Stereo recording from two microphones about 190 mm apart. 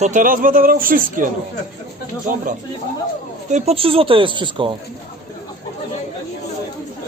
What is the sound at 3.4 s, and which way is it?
Speech, 35° right (ahead or behind).